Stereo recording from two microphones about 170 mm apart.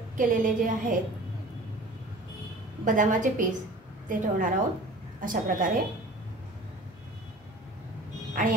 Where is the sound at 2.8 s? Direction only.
50° right (ahead or behind).